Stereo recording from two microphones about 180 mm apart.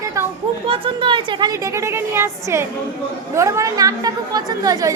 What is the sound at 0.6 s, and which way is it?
Speech, 30° right (ahead or behind).